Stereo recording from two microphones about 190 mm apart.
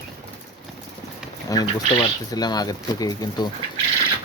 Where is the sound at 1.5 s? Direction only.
20° left (ahead or behind).